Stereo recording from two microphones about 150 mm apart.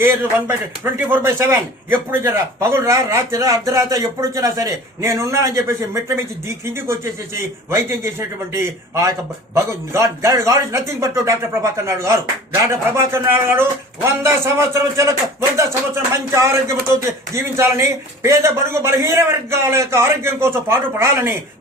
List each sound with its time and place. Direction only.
0.0 s a man's voice: 15° right (ahead or behind)